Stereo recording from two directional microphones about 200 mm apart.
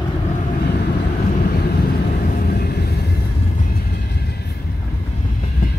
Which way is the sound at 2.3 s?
50° left (ahead or behind).